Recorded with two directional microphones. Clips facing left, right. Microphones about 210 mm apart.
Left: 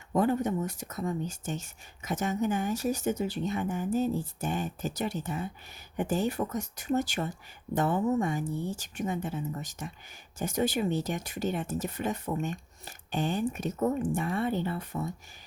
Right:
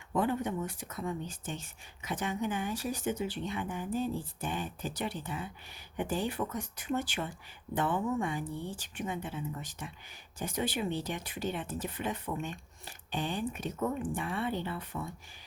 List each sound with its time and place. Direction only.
0.1 s speech: 40° left (ahead or behind)